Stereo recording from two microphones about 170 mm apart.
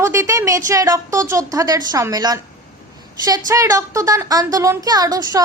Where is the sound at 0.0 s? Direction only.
15° right (ahead or behind).